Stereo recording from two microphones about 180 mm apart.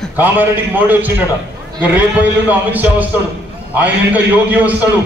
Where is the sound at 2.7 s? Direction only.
10° right (ahead or behind).